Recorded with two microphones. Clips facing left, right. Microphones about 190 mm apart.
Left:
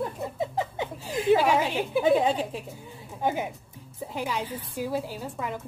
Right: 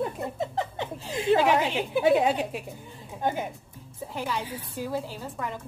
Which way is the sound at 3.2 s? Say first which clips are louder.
Left 1 dB; 10° left (ahead or behind).